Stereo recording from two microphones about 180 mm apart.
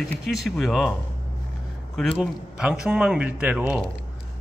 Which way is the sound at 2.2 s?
5° right (ahead or behind).